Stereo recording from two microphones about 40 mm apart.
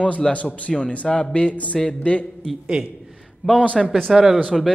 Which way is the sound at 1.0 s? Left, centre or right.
Centre.